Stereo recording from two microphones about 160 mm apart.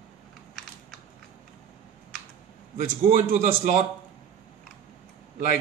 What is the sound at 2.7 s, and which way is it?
Speech, 60° right (ahead or behind).